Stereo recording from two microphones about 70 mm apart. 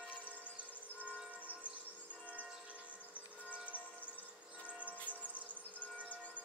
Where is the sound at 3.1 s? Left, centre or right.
Left.